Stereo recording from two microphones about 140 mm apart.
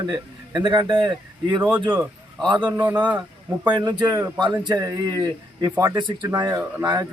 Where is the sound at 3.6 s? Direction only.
35° right (ahead or behind).